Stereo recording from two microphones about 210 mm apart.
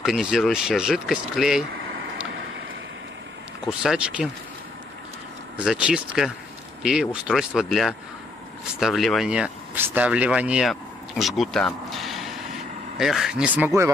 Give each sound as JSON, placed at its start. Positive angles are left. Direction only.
{"t": 0.0, "sound": "speech", "side_deg": 0}
{"t": 3.6, "sound": "speech", "side_deg": -5}
{"t": 5.6, "sound": "speech", "side_deg": -5}